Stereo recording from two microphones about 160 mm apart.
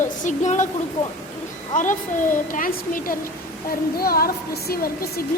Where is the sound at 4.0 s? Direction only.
70° left (ahead or behind).